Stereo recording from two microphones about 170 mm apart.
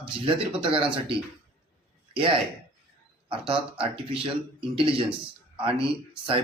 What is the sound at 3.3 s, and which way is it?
Speech, 30° right (ahead or behind).